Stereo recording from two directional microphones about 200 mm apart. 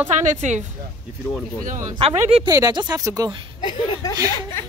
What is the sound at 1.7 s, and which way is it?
Speech, 40° right (ahead or behind).